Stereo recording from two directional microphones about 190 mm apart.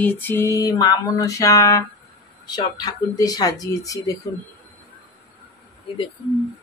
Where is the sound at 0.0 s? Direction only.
10° left (ahead or behind).